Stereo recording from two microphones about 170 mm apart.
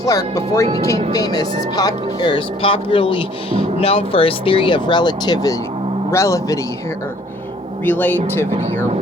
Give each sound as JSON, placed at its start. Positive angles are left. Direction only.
{"t": 0.0, "sound": "a man's voice", "side_deg": 20}
{"t": 7.9, "sound": "a man's voice", "side_deg": 10}